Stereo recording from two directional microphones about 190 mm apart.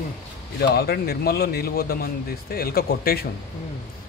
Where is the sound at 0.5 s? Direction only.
55° left (ahead or behind).